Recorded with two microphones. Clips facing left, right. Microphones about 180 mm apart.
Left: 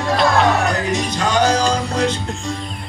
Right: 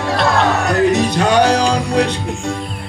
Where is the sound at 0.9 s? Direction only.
65° right (ahead or behind).